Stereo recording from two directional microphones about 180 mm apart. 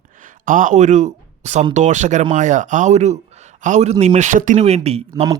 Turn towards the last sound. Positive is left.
turn(degrees=-35)  # may be behind; listen again after turning